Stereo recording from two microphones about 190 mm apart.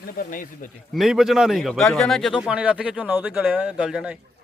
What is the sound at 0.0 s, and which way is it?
Speech, 45° left (ahead or behind).